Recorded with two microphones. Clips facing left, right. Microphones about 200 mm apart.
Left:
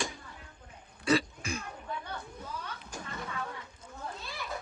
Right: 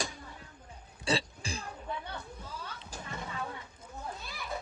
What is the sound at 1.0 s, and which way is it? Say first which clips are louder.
Throat clearing: left 4 dB; 30° right (ahead or behind).